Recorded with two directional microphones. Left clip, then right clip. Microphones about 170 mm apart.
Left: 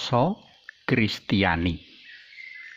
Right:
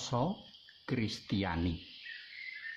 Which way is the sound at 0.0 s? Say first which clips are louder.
Left 12 dB; 25° left (ahead or behind).